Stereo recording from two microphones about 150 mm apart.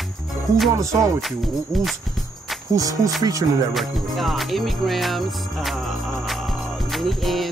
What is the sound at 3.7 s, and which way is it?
Music, centre (ahead or behind).